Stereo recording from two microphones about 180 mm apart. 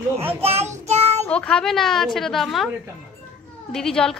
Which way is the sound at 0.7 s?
35° right (ahead or behind).